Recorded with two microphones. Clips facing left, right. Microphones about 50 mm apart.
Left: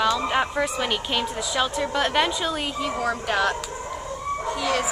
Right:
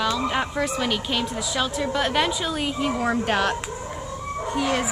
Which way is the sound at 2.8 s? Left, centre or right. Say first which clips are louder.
Right 2 dB; right.